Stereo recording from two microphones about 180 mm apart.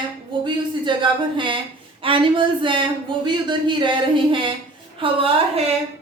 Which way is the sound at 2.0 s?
30° right (ahead or behind).